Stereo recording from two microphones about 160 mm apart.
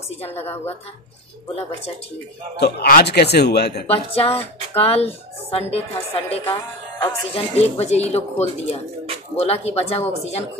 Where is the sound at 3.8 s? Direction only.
40° left (ahead or behind).